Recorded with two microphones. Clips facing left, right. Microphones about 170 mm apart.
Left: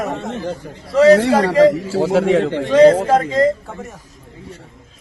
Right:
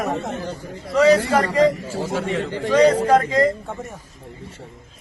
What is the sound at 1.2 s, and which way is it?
A man's voice, 85° left.